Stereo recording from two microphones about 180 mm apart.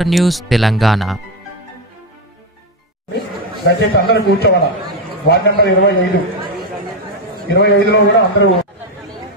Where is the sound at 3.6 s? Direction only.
60° left (ahead or behind).